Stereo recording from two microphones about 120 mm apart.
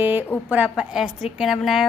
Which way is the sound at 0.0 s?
15° right (ahead or behind).